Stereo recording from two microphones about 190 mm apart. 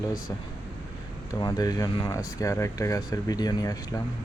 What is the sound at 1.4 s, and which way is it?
Speech, 20° left (ahead or behind).